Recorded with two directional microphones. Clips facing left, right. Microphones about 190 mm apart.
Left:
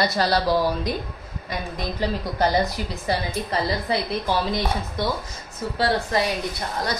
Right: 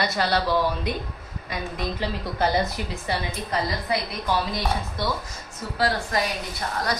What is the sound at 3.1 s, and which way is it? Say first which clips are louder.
Speech: left 4 dB; 40° left (ahead or behind).